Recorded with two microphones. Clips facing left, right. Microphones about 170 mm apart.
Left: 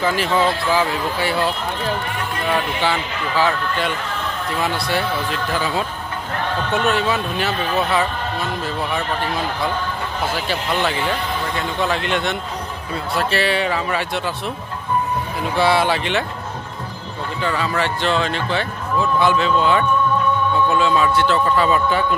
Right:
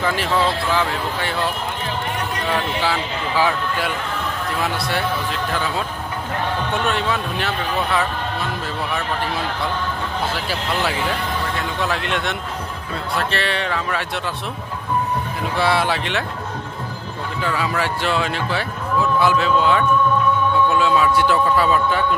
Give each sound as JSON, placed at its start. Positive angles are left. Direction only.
{"t": 0.0, "sound": "speech", "side_deg": 0}
{"t": 2.5, "sound": "speech", "side_deg": 0}
{"t": 10.5, "sound": "speech", "side_deg": -5}
{"t": 15.5, "sound": "speech", "side_deg": 0}
{"t": 17.4, "sound": "speech", "side_deg": -5}
{"t": 21.6, "sound": "speech", "side_deg": 0}